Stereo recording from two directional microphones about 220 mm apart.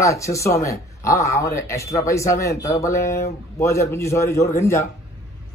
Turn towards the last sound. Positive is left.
turn(degrees=15)  # may be behind; listen again after turning